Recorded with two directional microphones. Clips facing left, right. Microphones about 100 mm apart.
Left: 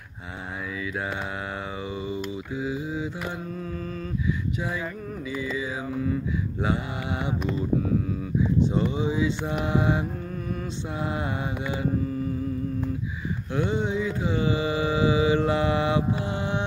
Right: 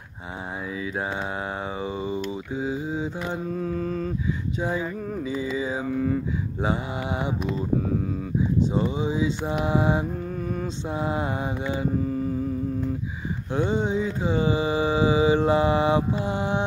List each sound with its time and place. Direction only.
1.8 s mantra: 30° right (ahead or behind)
8.7 s mantra: 20° right (ahead or behind)
13.5 s a sound: 20° right (ahead or behind)
14.0 s mantra: 25° right (ahead or behind)